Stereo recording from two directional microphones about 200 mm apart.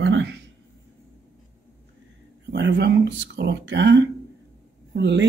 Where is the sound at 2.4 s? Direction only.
60° right (ahead or behind).